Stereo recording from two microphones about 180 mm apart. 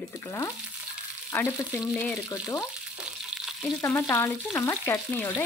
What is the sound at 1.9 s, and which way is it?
Speech, 5° left (ahead or behind).